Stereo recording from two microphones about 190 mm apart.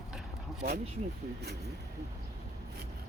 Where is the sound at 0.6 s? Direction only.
55° right (ahead or behind).